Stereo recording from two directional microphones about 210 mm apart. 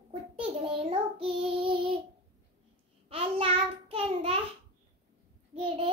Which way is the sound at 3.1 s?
25° right (ahead or behind).